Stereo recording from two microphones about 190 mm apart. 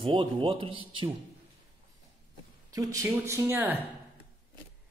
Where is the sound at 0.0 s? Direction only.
30° right (ahead or behind).